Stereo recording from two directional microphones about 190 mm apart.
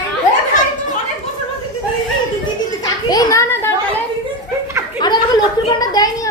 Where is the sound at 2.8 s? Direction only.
20° left (ahead or behind).